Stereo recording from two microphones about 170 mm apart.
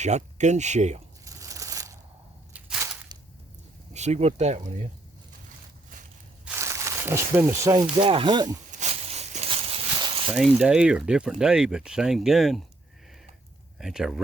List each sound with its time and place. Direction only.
0.0 s speech: 45° right (ahead or behind)
1.2 s tearing: 20° right (ahead or behind)
2.5 s crushing: 10° right (ahead or behind)
3.9 s speech: 40° right (ahead or behind)
6.4 s a sound: 15° right (ahead or behind)
7.9 s speech: 30° right (ahead or behind)
8.7 s a sound: 40° right (ahead or behind)
10.3 s speech: 5° right (ahead or behind)
13.7 s speech: centre (ahead or behind)